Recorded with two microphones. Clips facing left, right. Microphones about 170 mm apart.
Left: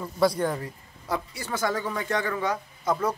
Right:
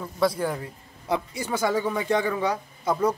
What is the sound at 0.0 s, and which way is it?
Speech, centre (ahead or behind).